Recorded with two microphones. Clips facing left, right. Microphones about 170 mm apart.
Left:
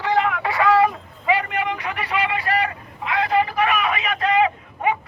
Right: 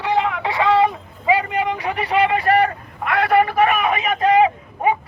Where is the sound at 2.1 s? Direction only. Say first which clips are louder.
Right 7 dB; 45° right (ahead or behind).